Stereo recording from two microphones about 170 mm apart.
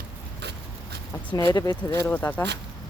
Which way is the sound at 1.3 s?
20° left (ahead or behind).